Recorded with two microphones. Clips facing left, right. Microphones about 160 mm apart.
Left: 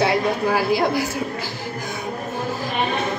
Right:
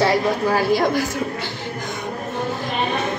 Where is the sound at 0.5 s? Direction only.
10° left (ahead or behind).